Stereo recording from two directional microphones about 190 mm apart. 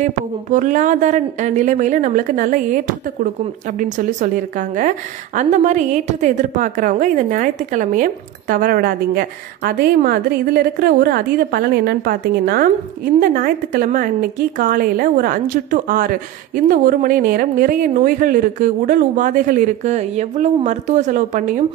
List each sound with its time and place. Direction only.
0.0 s speech: 40° right (ahead or behind)